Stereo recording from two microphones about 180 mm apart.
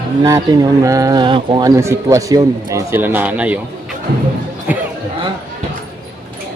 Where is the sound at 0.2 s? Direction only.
20° right (ahead or behind).